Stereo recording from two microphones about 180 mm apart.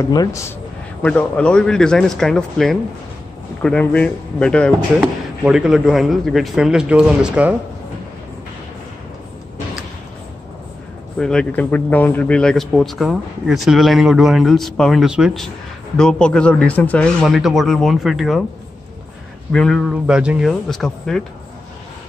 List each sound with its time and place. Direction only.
0.0 s speech: 20° left (ahead or behind)
1.0 s speech: 5° left (ahead or behind)
11.1 s speech: 5° left (ahead or behind)
19.5 s speech: 5° left (ahead or behind)